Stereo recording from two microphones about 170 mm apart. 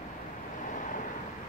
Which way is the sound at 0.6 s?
50° left (ahead or behind).